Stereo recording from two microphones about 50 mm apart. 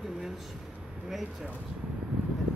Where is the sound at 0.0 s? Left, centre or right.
Centre.